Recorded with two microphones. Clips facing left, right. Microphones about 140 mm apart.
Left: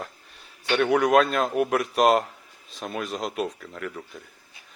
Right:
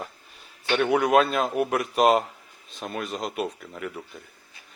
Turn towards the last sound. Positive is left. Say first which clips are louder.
# even
turn(degrees=-5)  # may be behind; listen again after turning